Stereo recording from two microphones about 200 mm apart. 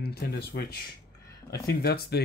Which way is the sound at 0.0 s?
50° left (ahead or behind).